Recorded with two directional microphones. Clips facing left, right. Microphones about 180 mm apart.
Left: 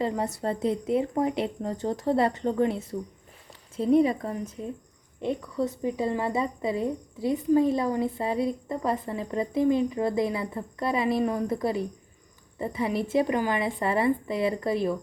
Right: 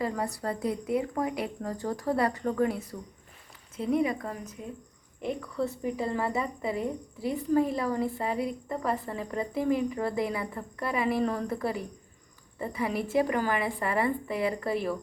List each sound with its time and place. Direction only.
0.0 s a woman's voice: 25° left (ahead or behind)
5.5 s a woman's voice: 20° left (ahead or behind)